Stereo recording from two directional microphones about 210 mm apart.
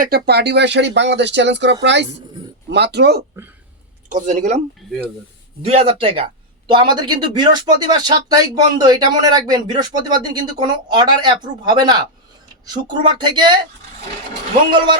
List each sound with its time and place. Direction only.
0.0 s speech: 50° right (ahead or behind)
4.1 s speech: 35° right (ahead or behind)
5.6 s speech: 25° right (ahead or behind)